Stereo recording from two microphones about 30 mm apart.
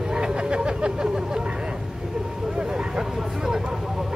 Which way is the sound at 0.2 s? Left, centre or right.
Right.